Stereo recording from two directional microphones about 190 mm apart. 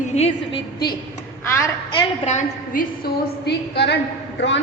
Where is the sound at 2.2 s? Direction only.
45° left (ahead or behind).